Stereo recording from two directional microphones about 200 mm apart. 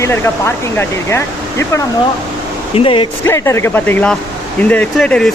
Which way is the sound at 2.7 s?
25° left (ahead or behind).